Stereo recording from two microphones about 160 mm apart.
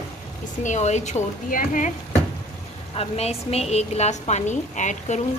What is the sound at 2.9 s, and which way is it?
A woman's voice, 40° left (ahead or behind).